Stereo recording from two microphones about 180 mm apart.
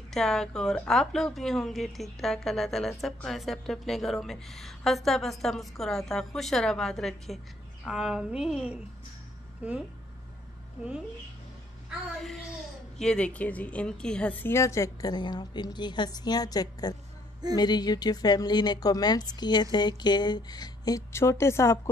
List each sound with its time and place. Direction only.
0.1 s a woman's voice: centre (ahead or behind)
13.0 s a woman's voice: 5° left (ahead or behind)